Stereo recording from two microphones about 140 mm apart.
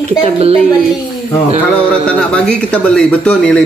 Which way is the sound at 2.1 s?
5° left (ahead or behind).